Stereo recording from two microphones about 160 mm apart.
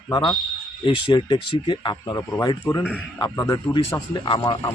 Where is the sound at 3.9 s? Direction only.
30° left (ahead or behind).